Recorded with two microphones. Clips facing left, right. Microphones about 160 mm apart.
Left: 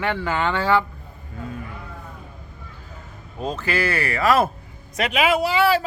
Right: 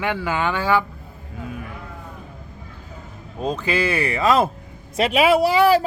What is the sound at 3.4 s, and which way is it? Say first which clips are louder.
Speech: right 2 dB; 15° right (ahead or behind).